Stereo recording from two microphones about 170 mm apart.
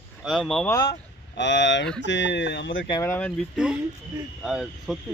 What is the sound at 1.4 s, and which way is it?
Speech, 90° left.